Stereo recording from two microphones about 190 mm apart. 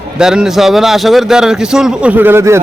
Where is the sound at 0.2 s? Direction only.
5° right (ahead or behind).